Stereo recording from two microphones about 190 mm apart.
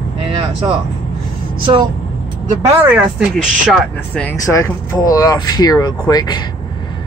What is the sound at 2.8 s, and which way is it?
Speech, 5° right (ahead or behind).